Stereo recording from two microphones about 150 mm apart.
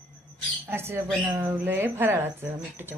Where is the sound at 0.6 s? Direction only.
15° right (ahead or behind).